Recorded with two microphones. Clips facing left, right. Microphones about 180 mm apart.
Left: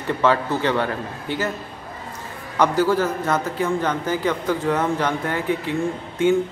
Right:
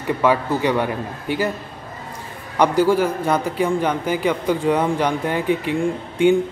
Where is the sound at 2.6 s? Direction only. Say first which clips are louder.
Right 2 dB; 15° right (ahead or behind).